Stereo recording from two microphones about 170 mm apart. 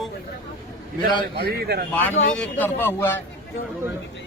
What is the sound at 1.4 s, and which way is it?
Speech, 65° right (ahead or behind).